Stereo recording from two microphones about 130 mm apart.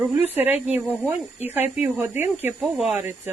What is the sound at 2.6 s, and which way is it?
Speech, 5° right (ahead or behind).